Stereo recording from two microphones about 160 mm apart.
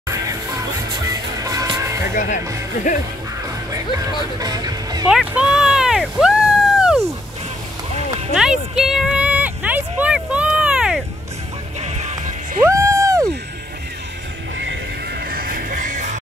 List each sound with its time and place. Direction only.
0.1 s music: 20° right (ahead or behind)
2.1 s speech: 55° left (ahead or behind)
3.7 s speech: 20° right (ahead or behind)
5.0 s a sound: 5° right (ahead or behind)
8.4 s vehicle: 5° right (ahead or behind)
11.8 s music: 45° right (ahead or behind)
12.6 s a sound: 20° right (ahead or behind)
15.3 s music: 65° right (ahead or behind)